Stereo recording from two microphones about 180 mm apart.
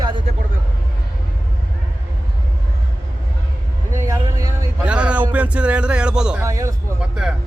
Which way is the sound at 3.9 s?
15° right (ahead or behind).